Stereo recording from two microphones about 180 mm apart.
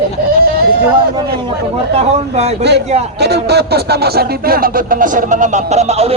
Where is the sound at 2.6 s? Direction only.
70° right (ahead or behind).